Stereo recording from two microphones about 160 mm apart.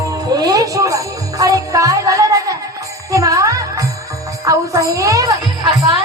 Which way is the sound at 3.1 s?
20° right (ahead or behind).